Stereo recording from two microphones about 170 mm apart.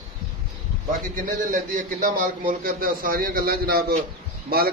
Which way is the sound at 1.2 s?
50° right (ahead or behind).